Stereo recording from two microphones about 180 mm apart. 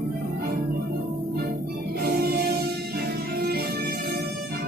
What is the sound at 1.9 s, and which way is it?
Music, 60° right (ahead or behind).